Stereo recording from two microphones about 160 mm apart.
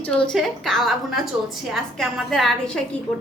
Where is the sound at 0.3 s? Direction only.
Centre (ahead or behind).